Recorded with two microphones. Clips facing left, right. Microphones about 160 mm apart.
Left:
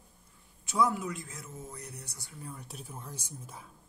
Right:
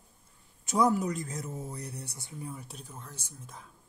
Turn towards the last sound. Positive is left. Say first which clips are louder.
# left 2 dB
turn(degrees=10)  # may be behind; listen again after turning